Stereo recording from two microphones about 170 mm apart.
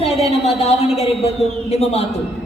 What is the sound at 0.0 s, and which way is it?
A woman's voice, 35° left (ahead or behind).